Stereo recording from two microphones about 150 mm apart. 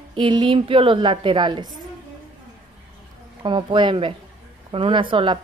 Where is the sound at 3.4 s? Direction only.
30° right (ahead or behind).